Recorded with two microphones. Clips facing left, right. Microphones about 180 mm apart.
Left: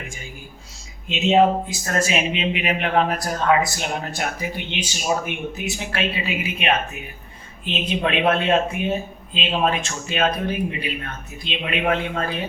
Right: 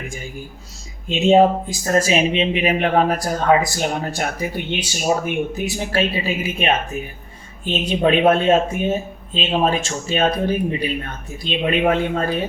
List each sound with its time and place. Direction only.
1.0 s speech: 35° right (ahead or behind)
9.5 s speech: 30° right (ahead or behind)